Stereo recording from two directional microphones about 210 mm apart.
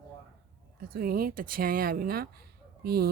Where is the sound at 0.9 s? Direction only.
45° right (ahead or behind).